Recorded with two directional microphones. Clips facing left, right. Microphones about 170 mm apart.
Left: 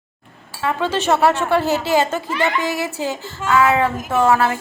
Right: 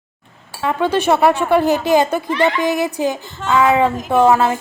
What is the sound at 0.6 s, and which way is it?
A woman's voice, 15° right (ahead or behind).